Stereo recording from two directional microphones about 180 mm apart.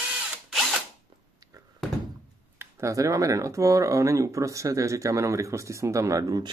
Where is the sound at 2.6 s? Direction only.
15° right (ahead or behind).